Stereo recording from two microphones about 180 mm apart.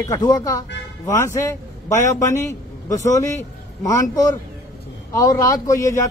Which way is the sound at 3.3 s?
20° left (ahead or behind).